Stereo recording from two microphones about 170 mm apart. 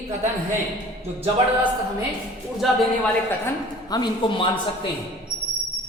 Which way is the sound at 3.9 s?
25° left (ahead or behind).